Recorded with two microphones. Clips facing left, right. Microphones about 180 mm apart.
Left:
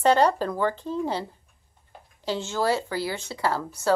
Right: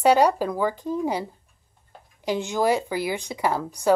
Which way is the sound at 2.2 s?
15° right (ahead or behind).